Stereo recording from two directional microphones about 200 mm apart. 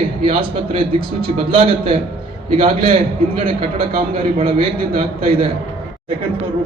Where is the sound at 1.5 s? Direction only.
25° right (ahead or behind).